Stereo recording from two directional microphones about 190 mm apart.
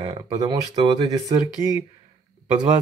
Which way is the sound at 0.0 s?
20° right (ahead or behind).